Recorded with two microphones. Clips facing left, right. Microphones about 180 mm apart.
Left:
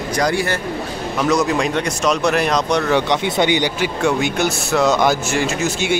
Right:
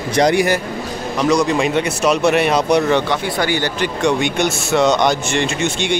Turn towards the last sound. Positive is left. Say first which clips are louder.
# even
turn(degrees=5)  # may be behind; listen again after turning